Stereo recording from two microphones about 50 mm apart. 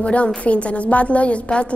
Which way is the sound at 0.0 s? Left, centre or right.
Left.